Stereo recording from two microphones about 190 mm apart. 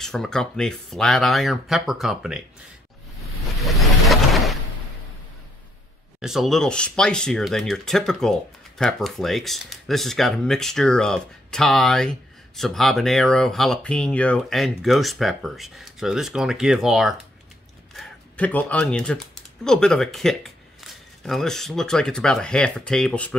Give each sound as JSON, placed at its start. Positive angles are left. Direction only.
{"t": 0.0, "sound": "speech", "side_deg": 0}
{"t": 3.5, "sound": "vehicle", "side_deg": 0}
{"t": 6.2, "sound": "speech", "side_deg": 0}